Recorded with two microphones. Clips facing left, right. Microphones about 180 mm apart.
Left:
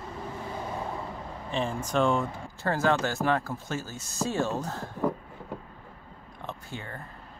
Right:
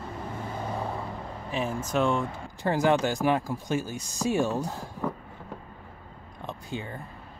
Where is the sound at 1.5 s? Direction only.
5° right (ahead or behind).